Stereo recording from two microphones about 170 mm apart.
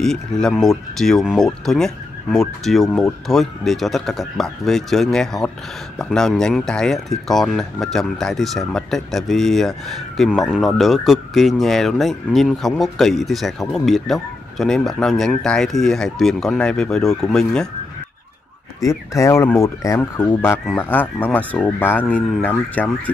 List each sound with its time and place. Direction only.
0.0 s speech: 5° left (ahead or behind)
18.9 s speech: 15° left (ahead or behind)